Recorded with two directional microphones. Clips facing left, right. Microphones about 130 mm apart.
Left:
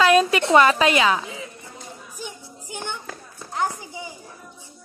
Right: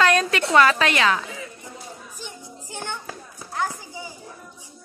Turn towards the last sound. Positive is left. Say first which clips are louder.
# left 2 dB
turn(degrees=20)  # may be behind; listen again after turning